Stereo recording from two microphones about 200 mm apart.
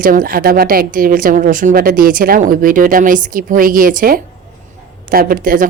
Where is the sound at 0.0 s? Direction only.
45° right (ahead or behind).